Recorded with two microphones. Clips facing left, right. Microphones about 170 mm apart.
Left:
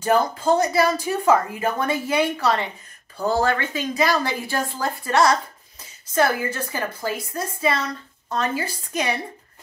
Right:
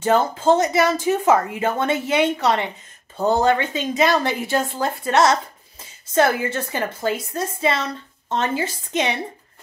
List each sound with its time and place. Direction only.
0.0 s a woman's voice: 25° right (ahead or behind)